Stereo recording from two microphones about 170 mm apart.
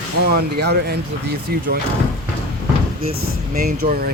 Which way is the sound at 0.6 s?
75° right (ahead or behind).